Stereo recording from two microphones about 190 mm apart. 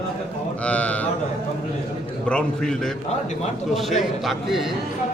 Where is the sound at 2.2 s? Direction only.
5° left (ahead or behind).